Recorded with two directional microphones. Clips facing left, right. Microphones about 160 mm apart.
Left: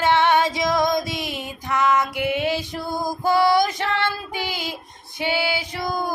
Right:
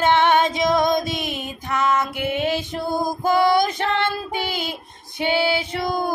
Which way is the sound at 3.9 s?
20° right (ahead or behind).